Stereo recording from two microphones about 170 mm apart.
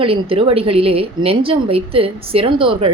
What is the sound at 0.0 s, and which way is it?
A woman's voice, 35° right (ahead or behind).